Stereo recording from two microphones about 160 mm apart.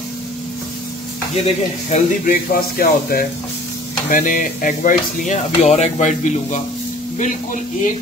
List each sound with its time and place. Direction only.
1.3 s stir: 40° left (ahead or behind)
2.2 s speech: 65° left (ahead or behind)
4.1 s speech: 55° left (ahead or behind)